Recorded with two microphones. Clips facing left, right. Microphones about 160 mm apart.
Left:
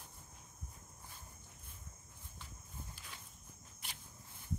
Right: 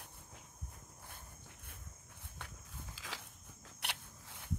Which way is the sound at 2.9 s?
90° right.